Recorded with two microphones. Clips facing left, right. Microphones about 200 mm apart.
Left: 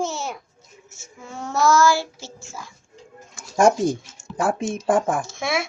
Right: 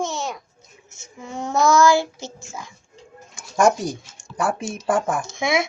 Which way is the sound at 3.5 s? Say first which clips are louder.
Left 1 dB; 30° left (ahead or behind).